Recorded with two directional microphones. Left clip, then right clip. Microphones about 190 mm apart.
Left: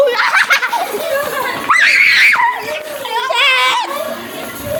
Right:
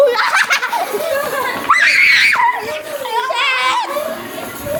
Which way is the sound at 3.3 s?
30° left (ahead or behind).